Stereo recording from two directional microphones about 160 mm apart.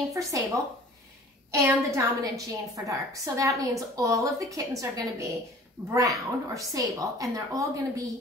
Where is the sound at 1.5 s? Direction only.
20° right (ahead or behind).